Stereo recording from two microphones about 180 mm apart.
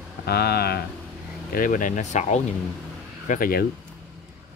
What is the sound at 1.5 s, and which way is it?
Speech, 50° left (ahead or behind).